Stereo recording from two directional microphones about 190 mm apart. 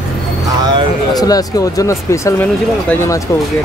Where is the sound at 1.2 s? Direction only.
20° left (ahead or behind).